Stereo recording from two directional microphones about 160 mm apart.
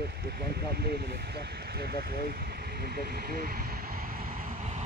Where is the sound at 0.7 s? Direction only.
80° right.